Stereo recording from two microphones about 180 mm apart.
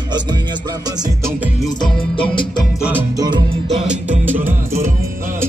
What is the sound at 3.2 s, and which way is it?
Music, 25° right (ahead or behind).